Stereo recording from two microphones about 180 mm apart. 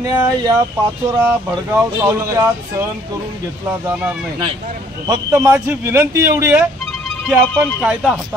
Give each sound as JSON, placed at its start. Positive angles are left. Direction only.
{"t": 0.0, "sound": "a man's voice", "side_deg": -20}
{"t": 5.1, "sound": "a man's voice", "side_deg": -15}